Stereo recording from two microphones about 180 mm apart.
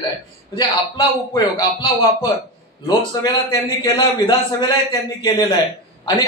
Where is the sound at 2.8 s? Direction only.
20° left (ahead or behind).